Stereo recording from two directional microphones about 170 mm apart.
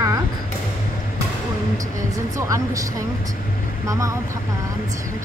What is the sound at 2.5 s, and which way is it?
Speech, 20° right (ahead or behind).